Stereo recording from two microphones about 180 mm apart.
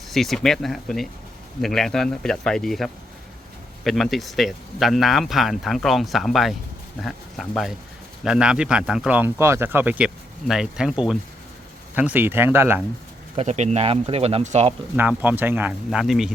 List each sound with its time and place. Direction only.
0.1 s speech: centre (ahead or behind)
13.3 s speech: 40° right (ahead or behind)
14.9 s speech: 10° right (ahead or behind)